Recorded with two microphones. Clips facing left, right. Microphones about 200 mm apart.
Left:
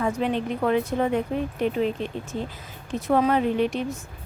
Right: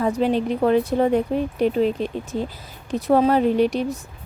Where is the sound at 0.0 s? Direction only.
35° right (ahead or behind).